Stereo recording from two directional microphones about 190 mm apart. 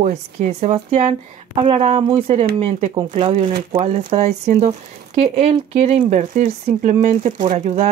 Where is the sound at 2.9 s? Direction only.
25° right (ahead or behind).